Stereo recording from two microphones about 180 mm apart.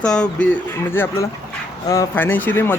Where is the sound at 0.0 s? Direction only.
5° left (ahead or behind).